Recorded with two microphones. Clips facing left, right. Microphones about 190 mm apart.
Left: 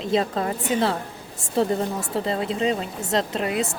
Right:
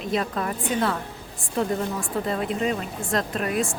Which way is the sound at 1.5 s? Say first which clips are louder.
Left 3 dB; 30° left (ahead or behind).